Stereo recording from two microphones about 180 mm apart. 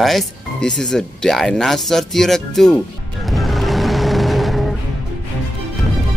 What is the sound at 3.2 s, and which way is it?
Vehicle, centre (ahead or behind).